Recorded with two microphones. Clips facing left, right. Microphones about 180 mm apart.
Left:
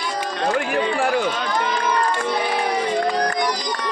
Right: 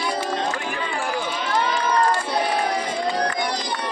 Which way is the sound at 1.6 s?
40° right (ahead or behind).